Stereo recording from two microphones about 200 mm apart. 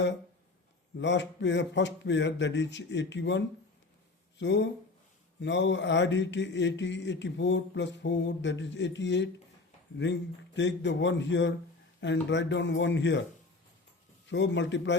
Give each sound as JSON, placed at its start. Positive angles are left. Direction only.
{"t": 0.9, "sound": "mantra", "side_deg": 65}
{"t": 4.4, "sound": "speech", "side_deg": 65}
{"t": 5.4, "sound": "mantra", "side_deg": 65}
{"t": 14.3, "sound": "mantra", "side_deg": 65}